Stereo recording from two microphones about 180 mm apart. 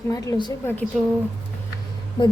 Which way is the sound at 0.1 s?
20° left (ahead or behind).